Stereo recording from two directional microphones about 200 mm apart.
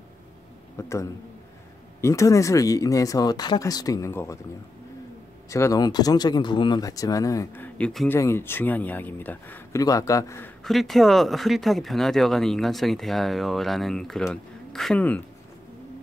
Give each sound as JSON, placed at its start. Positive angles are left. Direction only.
{"t": 0.7, "sound": "speech", "side_deg": 15}
{"t": 5.5, "sound": "speech", "side_deg": 15}
{"t": 10.6, "sound": "speech", "side_deg": 0}